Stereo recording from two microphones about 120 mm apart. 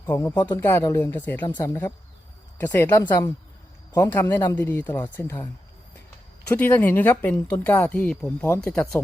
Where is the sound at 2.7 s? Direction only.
20° left (ahead or behind).